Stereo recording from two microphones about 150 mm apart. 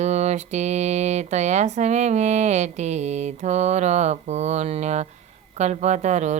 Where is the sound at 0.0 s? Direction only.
50° right (ahead or behind).